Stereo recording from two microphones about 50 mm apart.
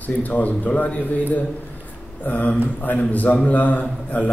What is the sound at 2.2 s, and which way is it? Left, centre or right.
A man's voice, left.